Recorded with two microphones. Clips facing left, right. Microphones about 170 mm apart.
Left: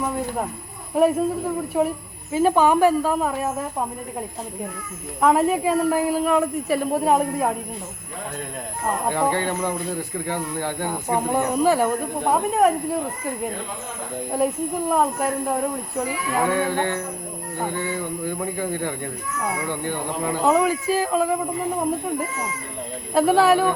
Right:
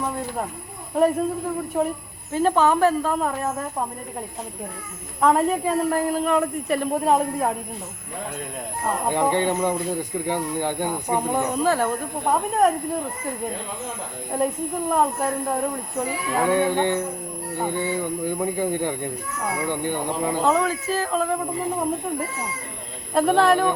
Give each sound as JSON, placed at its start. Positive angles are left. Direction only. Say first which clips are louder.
{"t": 0.9, "sound": "speech", "louder": "left 1 dB", "side_deg": 10}
{"t": 5.2, "sound": "a man's voice", "louder": "left 1 dB", "side_deg": 5}
{"t": 9.0, "sound": "speech", "louder": "right 2 dB", "side_deg": -15}
{"t": 11.3, "sound": "speech", "louder": "left 3 dB", "side_deg": 10}
{"t": 14.3, "sound": "a man's voice", "louder": "left 1 dB", "side_deg": 5}
{"t": 16.5, "sound": "speech", "louder": "right 2 dB", "side_deg": -15}
{"t": 20.4, "sound": "speech", "louder": "left 4 dB", "side_deg": 15}
{"t": 23.1, "sound": "a man's voice", "louder": "left 1 dB", "side_deg": 5}